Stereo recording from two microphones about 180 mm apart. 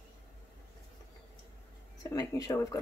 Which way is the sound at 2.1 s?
15° left (ahead or behind).